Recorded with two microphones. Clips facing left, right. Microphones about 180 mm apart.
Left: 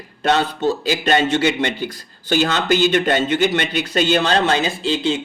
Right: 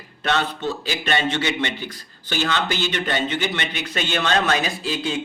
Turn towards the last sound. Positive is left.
turn(degrees=25)  # may be behind; listen again after turning